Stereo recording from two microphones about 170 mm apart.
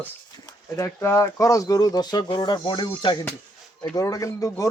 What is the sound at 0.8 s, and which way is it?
Speech, 20° left (ahead or behind).